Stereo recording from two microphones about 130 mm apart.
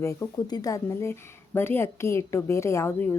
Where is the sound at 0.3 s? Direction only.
30° left (ahead or behind).